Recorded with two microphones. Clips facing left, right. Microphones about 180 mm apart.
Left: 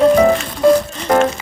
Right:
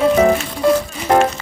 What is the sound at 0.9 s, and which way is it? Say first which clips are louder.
Music: even; 10° right (ahead or behind).